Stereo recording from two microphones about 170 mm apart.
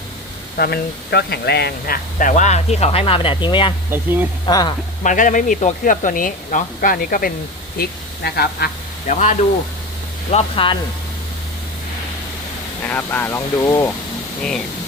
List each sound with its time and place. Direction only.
0.5 s speech: 65° left (ahead or behind)
2.1 s speech: 50° left (ahead or behind); by 3.7 s 30° left (ahead or behind)
3.9 s speech: 10° right (ahead or behind)
4.4 s speech: 25° left (ahead or behind)
5.0 s speech: 50° left (ahead or behind); by 8.7 s 65° left (ahead or behind)
9.0 s speech: 45° left (ahead or behind)
10.3 s speech: 30° left (ahead or behind)
12.8 s speech: 10° left (ahead or behind)